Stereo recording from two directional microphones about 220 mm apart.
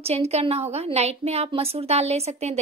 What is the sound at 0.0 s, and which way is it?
A woman's voice, 30° right (ahead or behind).